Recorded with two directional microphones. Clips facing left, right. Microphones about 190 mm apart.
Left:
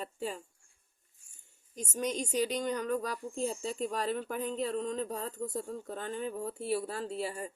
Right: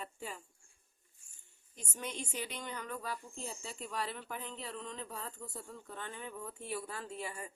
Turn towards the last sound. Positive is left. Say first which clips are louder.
# left 7 dB
turn(degrees=35)  # may be behind; listen again after turning